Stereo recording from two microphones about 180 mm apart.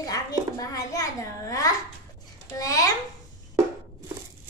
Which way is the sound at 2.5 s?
20° left (ahead or behind).